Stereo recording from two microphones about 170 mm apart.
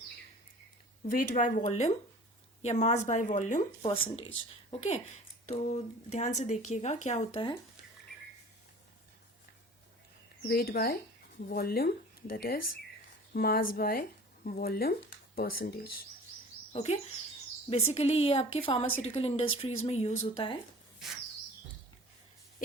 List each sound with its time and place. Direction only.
1.0 s speech: 50° left (ahead or behind)
4.7 s speech: 40° left (ahead or behind)
7.3 s speech: 30° left (ahead or behind)
10.4 s speech: 60° left (ahead or behind)
16.7 s speech: 40° left (ahead or behind)